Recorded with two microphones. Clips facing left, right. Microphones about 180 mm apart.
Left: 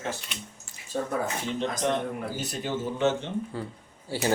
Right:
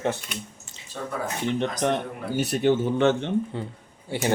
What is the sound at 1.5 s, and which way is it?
Speech, 60° right (ahead or behind).